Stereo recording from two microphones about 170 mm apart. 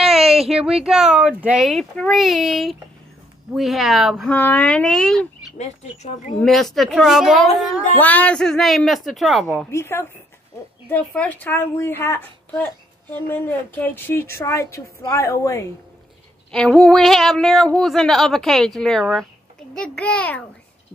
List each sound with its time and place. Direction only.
0.0 s speech: centre (ahead or behind)
6.4 s speech: centre (ahead or behind)
8.0 s speech: 10° left (ahead or behind)
9.7 s speech: 15° left (ahead or behind)
16.5 s speech: 5° left (ahead or behind)